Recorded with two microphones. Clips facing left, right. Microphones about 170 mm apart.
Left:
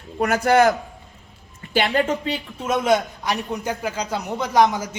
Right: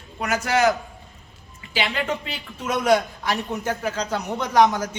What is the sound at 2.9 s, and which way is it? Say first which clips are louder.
A man's voice: even; 15° left (ahead or behind).